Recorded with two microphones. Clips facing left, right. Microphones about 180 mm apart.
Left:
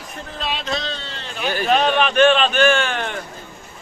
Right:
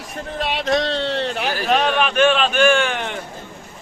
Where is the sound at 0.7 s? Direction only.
75° right (ahead or behind).